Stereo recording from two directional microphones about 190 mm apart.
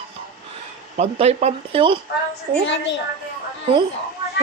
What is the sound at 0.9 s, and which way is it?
Speech, 35° right (ahead or behind).